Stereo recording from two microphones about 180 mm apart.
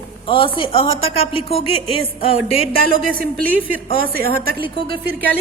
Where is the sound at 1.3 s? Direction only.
30° left (ahead or behind).